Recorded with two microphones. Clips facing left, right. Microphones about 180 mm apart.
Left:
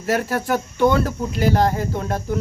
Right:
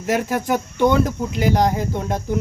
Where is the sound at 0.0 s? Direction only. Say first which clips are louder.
Right 1 dB; 15° right (ahead or behind).